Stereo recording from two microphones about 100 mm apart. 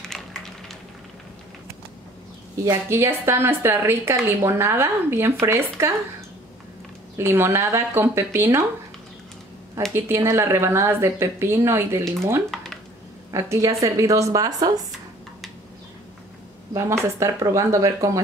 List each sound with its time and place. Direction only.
0.0 s a sound: 5° left (ahead or behind)
2.6 s speech: 25° right (ahead or behind)
7.2 s speech: 25° right (ahead or behind)
9.9 s speech: 25° right (ahead or behind)
12.5 s a sound: 5° left (ahead or behind)
13.3 s speech: 30° right (ahead or behind)
16.7 s speech: 30° right (ahead or behind)